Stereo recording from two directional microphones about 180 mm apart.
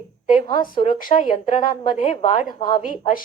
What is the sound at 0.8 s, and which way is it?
Speech, 40° left (ahead or behind).